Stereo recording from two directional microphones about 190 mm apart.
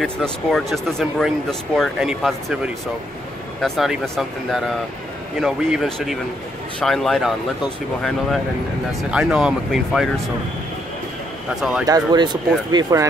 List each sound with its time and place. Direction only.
0.0 s speech: 5° left (ahead or behind)
9.1 s speech: 5° right (ahead or behind)
11.8 s speech: 20° right (ahead or behind)